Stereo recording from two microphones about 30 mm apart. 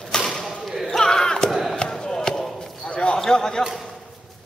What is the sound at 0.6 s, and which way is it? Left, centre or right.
Basketball bounce, centre.